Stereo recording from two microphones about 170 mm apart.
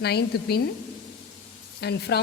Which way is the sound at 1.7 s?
75° left (ahead or behind).